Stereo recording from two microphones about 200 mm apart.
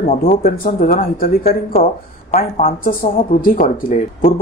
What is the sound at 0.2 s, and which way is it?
Speech, 45° left (ahead or behind).